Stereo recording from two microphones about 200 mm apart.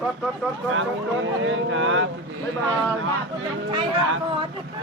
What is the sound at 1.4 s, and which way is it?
Speech, 80° right.